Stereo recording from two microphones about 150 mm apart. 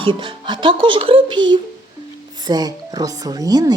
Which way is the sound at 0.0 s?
35° right (ahead or behind).